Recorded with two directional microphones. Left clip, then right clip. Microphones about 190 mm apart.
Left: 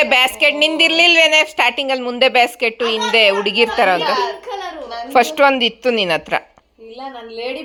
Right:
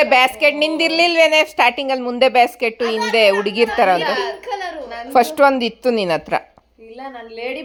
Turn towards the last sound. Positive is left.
turn(degrees=-10)  # may be behind; listen again after turning